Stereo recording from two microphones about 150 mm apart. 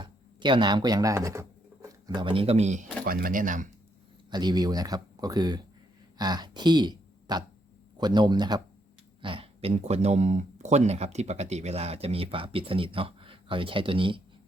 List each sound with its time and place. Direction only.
0.0 s speech: 30° right (ahead or behind); by 2.8 s 50° right (ahead or behind)
3.1 s speech: 75° right (ahead or behind)
4.3 s speech: 30° right (ahead or behind)